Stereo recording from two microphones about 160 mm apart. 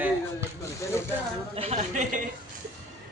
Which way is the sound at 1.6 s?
45° right (ahead or behind).